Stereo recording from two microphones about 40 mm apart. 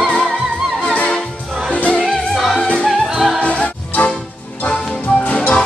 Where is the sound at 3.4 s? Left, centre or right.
Left.